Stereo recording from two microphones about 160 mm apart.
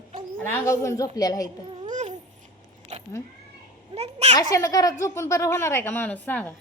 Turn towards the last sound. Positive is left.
turn(degrees=10)  # may be behind; listen again after turning